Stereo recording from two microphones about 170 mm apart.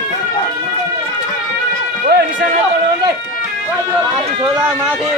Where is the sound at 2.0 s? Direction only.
60° right (ahead or behind).